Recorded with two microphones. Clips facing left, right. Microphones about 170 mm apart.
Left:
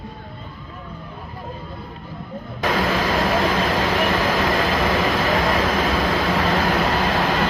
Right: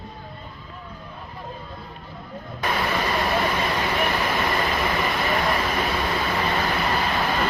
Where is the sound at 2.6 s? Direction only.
90° left.